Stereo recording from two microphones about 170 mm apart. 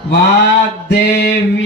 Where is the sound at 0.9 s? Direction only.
75° left (ahead or behind).